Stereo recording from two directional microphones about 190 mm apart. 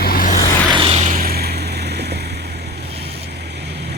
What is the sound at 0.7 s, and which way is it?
Vehicle, 30° right (ahead or behind).